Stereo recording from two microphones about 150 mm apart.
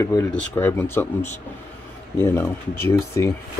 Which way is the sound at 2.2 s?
15° left (ahead or behind).